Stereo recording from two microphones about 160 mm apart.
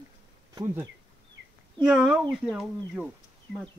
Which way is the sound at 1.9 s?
5° right (ahead or behind).